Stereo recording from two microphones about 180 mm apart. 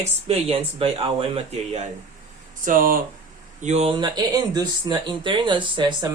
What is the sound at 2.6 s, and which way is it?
Speech, 50° right (ahead or behind).